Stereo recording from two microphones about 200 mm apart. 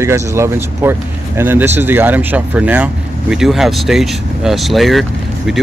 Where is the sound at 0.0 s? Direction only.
15° right (ahead or behind).